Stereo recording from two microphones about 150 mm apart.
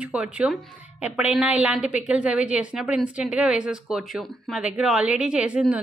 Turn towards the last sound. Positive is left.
turn(degrees=-5)  # may be behind; listen again after turning